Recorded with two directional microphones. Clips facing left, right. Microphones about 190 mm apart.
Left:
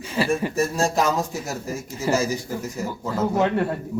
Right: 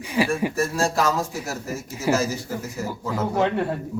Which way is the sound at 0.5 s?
20° left (ahead or behind).